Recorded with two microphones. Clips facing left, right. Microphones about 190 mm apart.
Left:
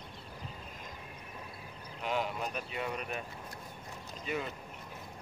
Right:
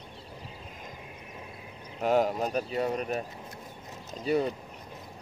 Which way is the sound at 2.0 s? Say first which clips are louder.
Right 10 dB; 40° right (ahead or behind).